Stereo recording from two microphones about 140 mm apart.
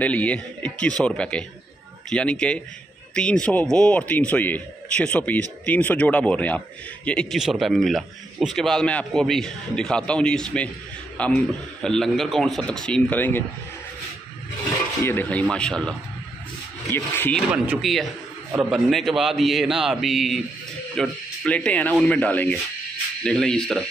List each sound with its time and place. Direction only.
0.0 s a man's voice: 10° left (ahead or behind)
15.0 s a man's voice: 10° left (ahead or behind)
16.8 s speech: 15° left (ahead or behind)
18.6 s a man's voice: centre (ahead or behind)